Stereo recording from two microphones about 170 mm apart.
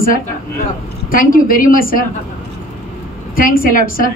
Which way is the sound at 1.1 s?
55° left (ahead or behind).